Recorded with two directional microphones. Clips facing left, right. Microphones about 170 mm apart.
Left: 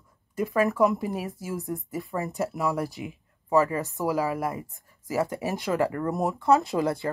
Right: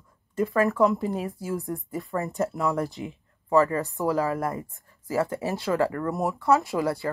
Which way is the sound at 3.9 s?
10° left (ahead or behind).